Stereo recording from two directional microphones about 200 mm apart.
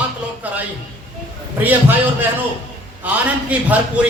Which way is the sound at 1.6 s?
10° right (ahead or behind).